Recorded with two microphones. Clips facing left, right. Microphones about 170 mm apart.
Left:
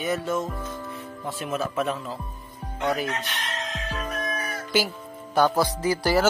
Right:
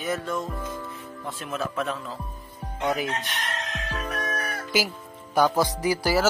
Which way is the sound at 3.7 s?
75° right (ahead or behind).